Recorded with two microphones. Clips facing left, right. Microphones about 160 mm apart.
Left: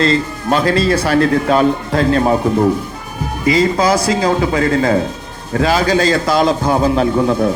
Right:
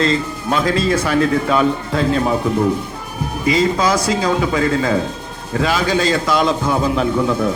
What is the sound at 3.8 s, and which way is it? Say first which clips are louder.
A man's voice: left 3 dB; 35° left (ahead or behind).